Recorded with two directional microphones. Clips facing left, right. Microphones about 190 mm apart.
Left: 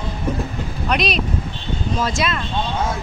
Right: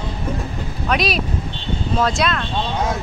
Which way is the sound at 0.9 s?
Centre (ahead or behind).